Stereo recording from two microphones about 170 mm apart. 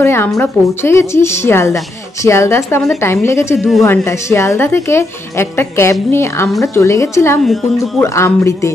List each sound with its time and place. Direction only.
0.0 s a woman's voice: 15° left (ahead or behind)
7.4 s a woman's voice: centre (ahead or behind)
8.0 s a woman's voice: 15° left (ahead or behind)